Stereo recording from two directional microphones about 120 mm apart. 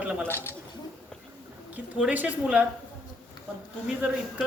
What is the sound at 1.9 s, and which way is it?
Speech, 10° right (ahead or behind).